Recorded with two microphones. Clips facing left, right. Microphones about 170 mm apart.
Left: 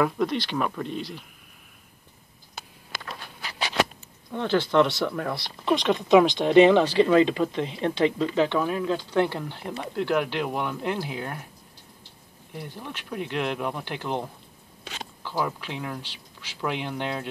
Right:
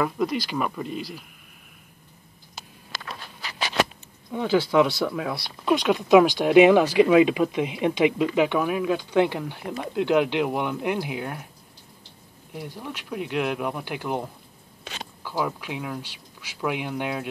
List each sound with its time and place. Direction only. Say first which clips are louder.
0.0 s speech: left 1 dB; 5° right (ahead or behind)
2.5 s a sound: even; 55° left (ahead or behind)
4.3 s speech: right 2 dB; 10° right (ahead or behind)
12.5 s speech: right 2 dB; 10° right (ahead or behind)
15.2 s speech: right 1 dB; 5° right (ahead or behind)